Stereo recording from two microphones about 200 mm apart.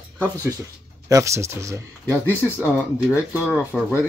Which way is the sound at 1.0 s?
15° right (ahead or behind).